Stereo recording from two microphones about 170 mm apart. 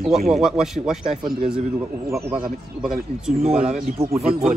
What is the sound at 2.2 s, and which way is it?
Speech, 5° right (ahead or behind).